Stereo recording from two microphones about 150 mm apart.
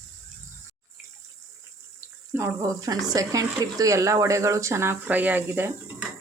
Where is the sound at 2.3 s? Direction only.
15° right (ahead or behind).